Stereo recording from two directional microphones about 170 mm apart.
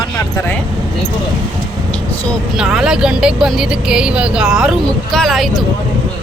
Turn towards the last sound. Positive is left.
turn(degrees=0)  # may be behind; listen again after turning